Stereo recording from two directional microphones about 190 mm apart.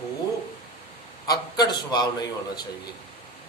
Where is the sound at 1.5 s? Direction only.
20° left (ahead or behind).